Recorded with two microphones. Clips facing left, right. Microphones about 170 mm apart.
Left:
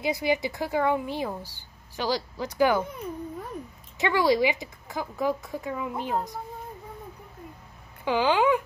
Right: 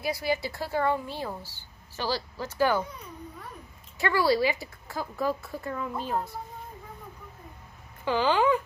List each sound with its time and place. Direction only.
0.0 s speech: 20° left (ahead or behind)
4.0 s speech: 20° left (ahead or behind)
8.0 s speech: 15° left (ahead or behind)